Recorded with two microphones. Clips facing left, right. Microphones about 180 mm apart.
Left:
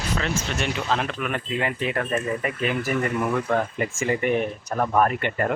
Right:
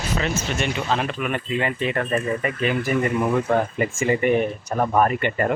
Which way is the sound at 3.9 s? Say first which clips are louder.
Right 3 dB; 5° right (ahead or behind).